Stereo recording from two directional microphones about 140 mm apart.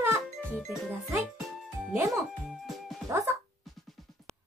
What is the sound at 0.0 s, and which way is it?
Music, 15° right (ahead or behind).